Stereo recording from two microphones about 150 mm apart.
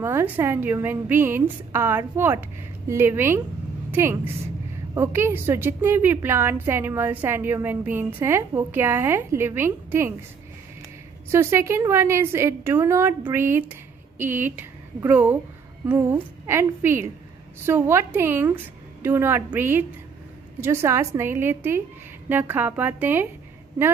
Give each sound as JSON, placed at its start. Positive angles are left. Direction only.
{"t": 0.0, "sound": "a woman's voice", "side_deg": -15}
{"t": 11.3, "sound": "a woman's voice", "side_deg": -20}